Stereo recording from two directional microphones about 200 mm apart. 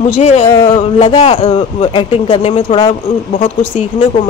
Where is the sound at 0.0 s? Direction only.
30° left (ahead or behind).